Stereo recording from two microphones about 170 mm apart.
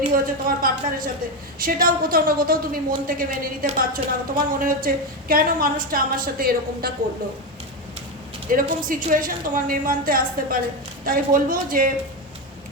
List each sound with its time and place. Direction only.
0.1 s a woman's voice: 55° right (ahead or behind)
8.4 s a woman's voice: 55° right (ahead or behind)